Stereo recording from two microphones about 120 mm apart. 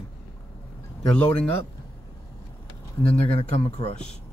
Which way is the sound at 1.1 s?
10° left (ahead or behind).